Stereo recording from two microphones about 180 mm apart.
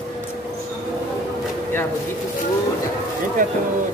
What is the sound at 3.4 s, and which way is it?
Speech, 50° right (ahead or behind).